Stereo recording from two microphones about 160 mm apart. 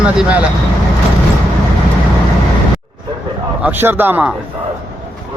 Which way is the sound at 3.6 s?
10° right (ahead or behind).